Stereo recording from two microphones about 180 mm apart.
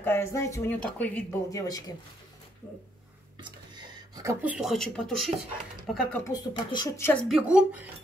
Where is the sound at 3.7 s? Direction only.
20° right (ahead or behind).